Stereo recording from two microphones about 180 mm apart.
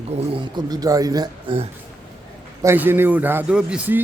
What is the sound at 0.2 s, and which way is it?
Speech, 25° right (ahead or behind).